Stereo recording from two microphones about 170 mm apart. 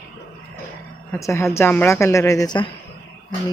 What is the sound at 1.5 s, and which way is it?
Speech, 10° left (ahead or behind).